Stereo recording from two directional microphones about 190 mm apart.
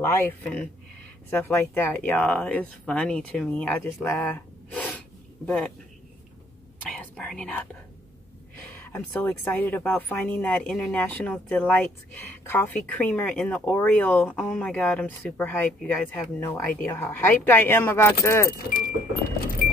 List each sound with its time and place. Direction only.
0.0 s a woman's voice: 15° left (ahead or behind)
7.2 s a woman's voice: 5° left (ahead or behind)
18.5 s speech: 50° left (ahead or behind)